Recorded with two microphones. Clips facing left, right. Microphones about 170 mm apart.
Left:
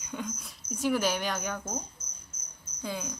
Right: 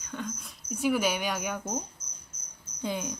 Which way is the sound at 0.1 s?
10° left (ahead or behind).